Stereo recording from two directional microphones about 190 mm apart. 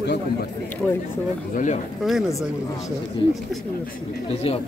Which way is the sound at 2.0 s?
Centre (ahead or behind).